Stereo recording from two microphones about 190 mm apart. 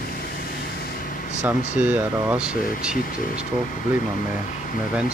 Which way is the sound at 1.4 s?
10° right (ahead or behind).